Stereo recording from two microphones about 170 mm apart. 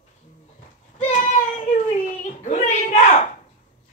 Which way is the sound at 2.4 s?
45° left (ahead or behind).